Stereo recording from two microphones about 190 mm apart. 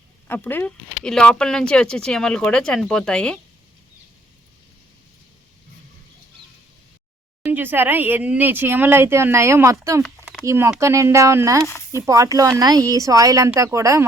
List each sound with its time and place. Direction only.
0.3 s speech: 10° left (ahead or behind)
7.4 s speech: 10° right (ahead or behind)